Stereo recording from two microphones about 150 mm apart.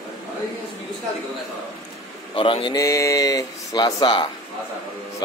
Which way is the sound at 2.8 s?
20° left (ahead or behind).